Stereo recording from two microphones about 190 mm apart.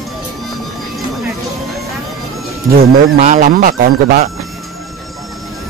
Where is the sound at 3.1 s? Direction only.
40° right (ahead or behind).